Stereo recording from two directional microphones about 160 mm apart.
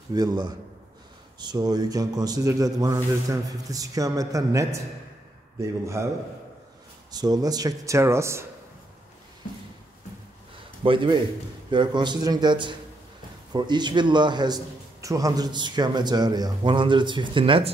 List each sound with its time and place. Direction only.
0.1 s a man's voice: 25° right (ahead or behind)
7.1 s a man's voice: 25° right (ahead or behind)
10.8 s a man's voice: 30° right (ahead or behind)